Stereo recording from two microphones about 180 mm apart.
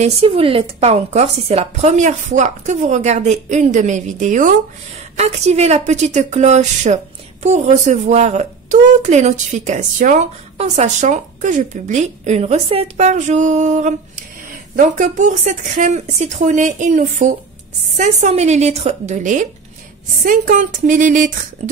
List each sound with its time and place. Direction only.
0.0 s a woman's voice: 30° right (ahead or behind)